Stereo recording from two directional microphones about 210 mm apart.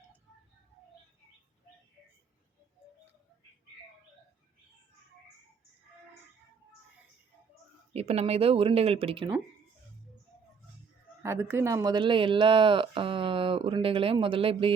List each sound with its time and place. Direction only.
7.9 s speech: 30° right (ahead or behind)
11.2 s speech: 10° right (ahead or behind)